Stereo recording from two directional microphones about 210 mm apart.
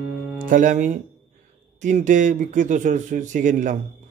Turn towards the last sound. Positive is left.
turn(degrees=-35)  # may be behind; listen again after turning